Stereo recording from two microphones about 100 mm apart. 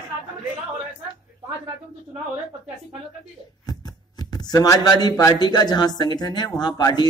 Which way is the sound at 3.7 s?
45° left (ahead or behind).